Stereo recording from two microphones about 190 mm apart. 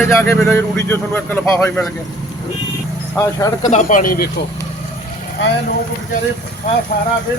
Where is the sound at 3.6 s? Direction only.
40° left (ahead or behind).